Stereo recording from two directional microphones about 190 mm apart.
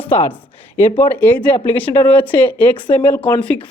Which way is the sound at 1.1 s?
10° left (ahead or behind).